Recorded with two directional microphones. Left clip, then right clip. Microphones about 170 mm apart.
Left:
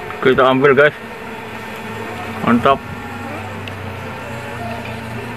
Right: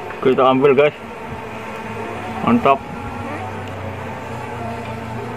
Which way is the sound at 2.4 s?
10° left (ahead or behind).